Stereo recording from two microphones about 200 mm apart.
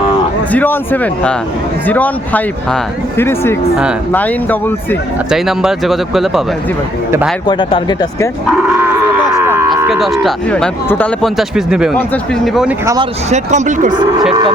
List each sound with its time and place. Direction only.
0.5 s speech: 10° left (ahead or behind)
5.3 s speech: centre (ahead or behind)
7.4 s speech: 25° left (ahead or behind)
8.5 s livestock: 5° right (ahead or behind)
9.4 s a sound: 10° right (ahead or behind)
9.8 s speech: centre (ahead or behind)
12.8 s speech: 15° right (ahead or behind)
13.3 s speech: 35° right (ahead or behind)
13.9 s speech: 20° right (ahead or behind)